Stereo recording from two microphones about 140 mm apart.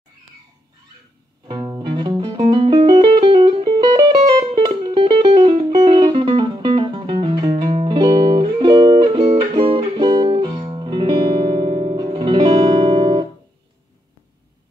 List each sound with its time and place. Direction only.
1.6 s music: 25° right (ahead or behind)
12.4 s music: 45° right (ahead or behind)